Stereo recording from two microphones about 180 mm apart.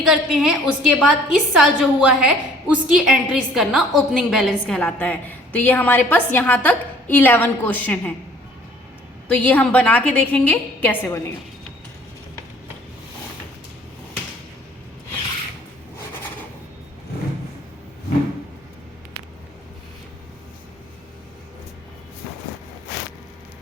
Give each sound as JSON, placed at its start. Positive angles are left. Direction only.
{"t": 0.0, "sound": "a woman's voice", "side_deg": -5}
{"t": 9.3, "sound": "a woman's voice", "side_deg": 10}